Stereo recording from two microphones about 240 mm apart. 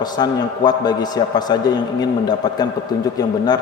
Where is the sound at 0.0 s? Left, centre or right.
Centre.